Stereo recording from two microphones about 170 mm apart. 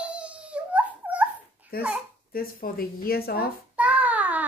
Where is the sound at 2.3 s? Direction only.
60° left (ahead or behind).